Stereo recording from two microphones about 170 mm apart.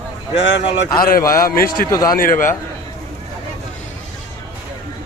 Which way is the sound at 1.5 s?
60° left (ahead or behind).